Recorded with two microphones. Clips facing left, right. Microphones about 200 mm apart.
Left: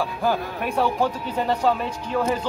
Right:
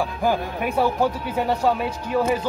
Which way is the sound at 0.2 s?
10° right (ahead or behind).